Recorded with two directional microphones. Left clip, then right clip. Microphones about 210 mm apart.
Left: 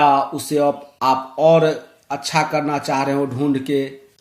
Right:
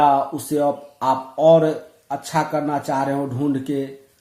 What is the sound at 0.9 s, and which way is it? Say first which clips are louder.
Speech: left 2 dB; 25° left (ahead or behind).